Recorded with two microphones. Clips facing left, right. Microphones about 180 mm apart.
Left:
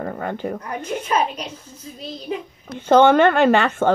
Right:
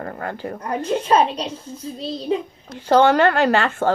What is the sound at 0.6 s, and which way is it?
A woman's voice, 30° right (ahead or behind).